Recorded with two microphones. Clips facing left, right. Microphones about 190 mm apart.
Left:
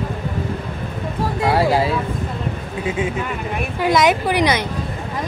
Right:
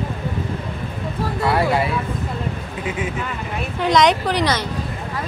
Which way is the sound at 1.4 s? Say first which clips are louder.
Left 2 dB; 25° left (ahead or behind).